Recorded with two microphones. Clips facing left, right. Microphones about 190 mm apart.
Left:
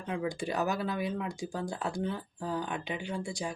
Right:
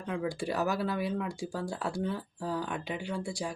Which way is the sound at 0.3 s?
20° left (ahead or behind).